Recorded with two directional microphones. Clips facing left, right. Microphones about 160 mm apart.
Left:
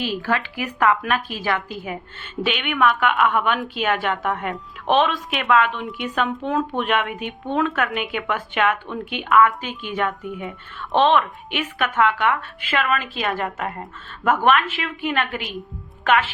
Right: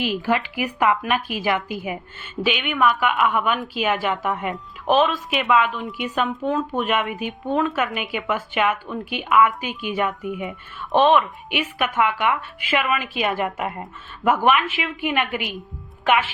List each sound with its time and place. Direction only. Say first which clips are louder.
0.0 s a woman's voice: right 2 dB; 15° right (ahead or behind)